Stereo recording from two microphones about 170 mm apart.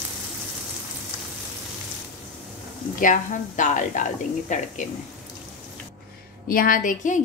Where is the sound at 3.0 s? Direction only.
50° left (ahead or behind).